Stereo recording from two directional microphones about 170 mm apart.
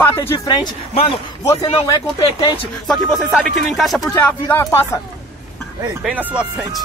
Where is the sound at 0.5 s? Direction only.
25° left (ahead or behind).